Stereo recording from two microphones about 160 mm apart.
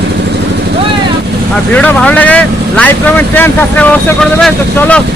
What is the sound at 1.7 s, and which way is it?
Speech, 5° left (ahead or behind).